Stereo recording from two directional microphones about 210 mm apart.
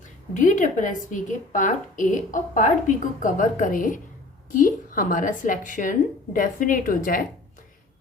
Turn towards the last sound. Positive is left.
turn(degrees=40)  # may be behind; listen again after turning